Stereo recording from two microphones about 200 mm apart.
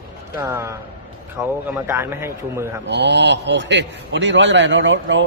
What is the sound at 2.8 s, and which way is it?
A man's voice, 60° right (ahead or behind).